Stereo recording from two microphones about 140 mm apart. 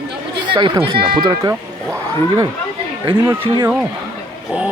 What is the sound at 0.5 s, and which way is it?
Speech, 35° right (ahead or behind).